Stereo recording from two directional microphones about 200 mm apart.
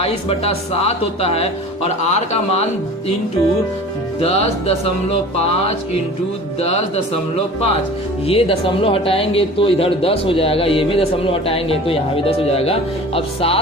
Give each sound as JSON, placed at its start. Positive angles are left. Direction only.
{"t": 0.0, "sound": "speech", "side_deg": 30}
{"t": 4.2, "sound": "speech", "side_deg": 30}
{"t": 6.6, "sound": "speech", "side_deg": 30}
{"t": 8.3, "sound": "speech", "side_deg": 30}